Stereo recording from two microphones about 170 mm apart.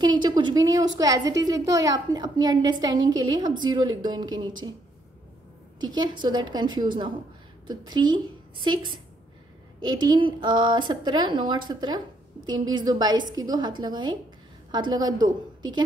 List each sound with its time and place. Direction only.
0.0 s a woman's voice: 25° right (ahead or behind)
5.8 s a woman's voice: 25° right (ahead or behind)